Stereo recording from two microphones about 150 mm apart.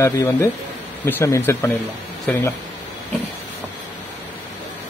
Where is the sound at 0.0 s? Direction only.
20° left (ahead or behind).